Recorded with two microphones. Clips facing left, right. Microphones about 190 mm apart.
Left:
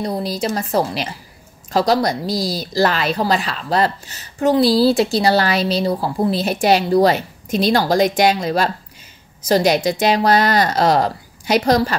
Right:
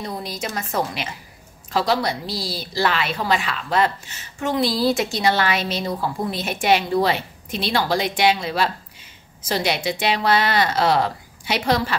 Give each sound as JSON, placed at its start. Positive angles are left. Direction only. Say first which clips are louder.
{"t": 0.0, "sound": "a woman's voice", "louder": "left 7 dB", "side_deg": 35}